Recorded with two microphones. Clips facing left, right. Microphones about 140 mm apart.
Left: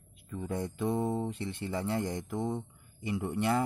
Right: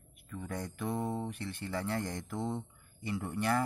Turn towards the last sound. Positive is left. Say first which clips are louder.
# left 2 dB
turn(degrees=20)  # may be behind; listen again after turning